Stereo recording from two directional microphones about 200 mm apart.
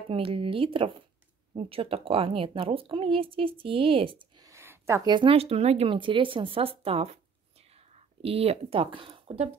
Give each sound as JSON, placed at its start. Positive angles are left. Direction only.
{"t": 0.1, "sound": "speech", "side_deg": -25}